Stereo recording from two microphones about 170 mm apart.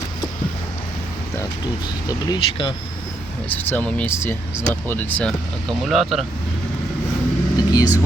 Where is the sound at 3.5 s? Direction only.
10° left (ahead or behind).